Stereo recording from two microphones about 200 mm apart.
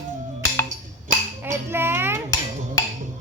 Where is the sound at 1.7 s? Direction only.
10° right (ahead or behind).